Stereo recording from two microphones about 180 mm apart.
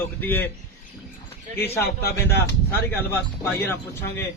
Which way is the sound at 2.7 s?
10° left (ahead or behind).